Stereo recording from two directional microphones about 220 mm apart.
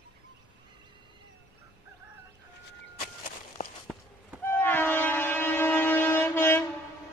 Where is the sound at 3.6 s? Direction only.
35° left (ahead or behind).